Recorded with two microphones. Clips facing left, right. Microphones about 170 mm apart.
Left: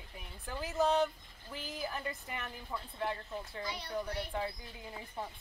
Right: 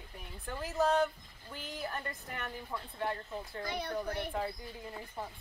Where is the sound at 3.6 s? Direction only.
55° right (ahead or behind).